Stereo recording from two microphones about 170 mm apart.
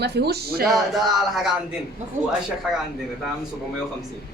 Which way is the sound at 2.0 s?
45° right (ahead or behind).